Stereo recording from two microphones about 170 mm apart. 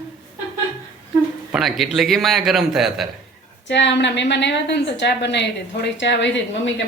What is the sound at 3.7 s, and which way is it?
A woman's voice, 90° left.